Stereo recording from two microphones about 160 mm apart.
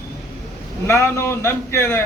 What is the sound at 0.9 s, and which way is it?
Speech, 15° left (ahead or behind).